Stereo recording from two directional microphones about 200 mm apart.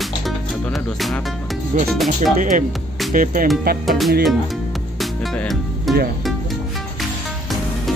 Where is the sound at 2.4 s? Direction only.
40° right (ahead or behind).